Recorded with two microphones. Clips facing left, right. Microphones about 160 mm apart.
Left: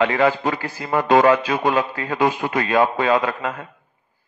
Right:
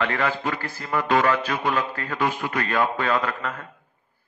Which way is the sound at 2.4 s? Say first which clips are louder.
Left 5 dB; 50° left (ahead or behind).